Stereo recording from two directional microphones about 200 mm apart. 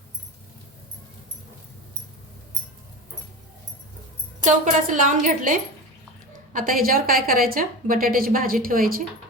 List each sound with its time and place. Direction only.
4.4 s a woman's voice: 40° right (ahead or behind)